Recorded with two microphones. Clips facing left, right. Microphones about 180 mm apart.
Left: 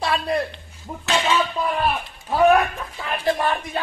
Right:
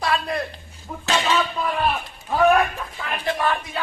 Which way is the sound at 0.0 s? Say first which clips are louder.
Left 1 dB; 30° left (ahead or behind).